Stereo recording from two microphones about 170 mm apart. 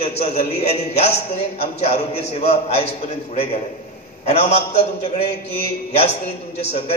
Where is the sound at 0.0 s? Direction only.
40° left (ahead or behind).